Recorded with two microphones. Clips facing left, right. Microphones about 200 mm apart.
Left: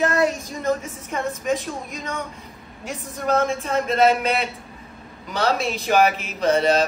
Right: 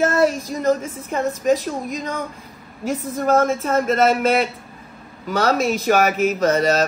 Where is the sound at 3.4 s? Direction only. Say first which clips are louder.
Right 3 dB; centre (ahead or behind).